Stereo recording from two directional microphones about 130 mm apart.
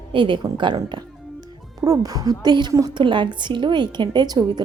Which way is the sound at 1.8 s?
25° right (ahead or behind).